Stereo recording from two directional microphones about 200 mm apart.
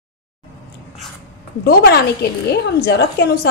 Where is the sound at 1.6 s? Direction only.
55° left (ahead or behind).